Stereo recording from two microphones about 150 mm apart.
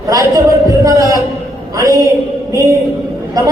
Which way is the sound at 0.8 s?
20° right (ahead or behind).